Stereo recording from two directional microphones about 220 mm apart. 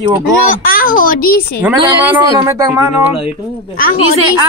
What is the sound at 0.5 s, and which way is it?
A child's voice, 40° left (ahead or behind).